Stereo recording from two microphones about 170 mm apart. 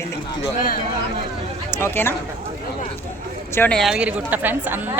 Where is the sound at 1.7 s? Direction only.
15° left (ahead or behind).